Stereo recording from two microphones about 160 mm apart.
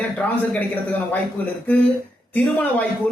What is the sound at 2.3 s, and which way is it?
Speech, 10° left (ahead or behind).